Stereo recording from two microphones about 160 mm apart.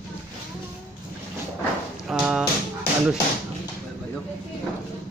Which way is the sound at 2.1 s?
5° right (ahead or behind).